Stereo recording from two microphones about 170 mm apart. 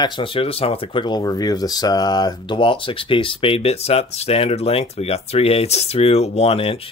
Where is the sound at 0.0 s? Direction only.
30° left (ahead or behind).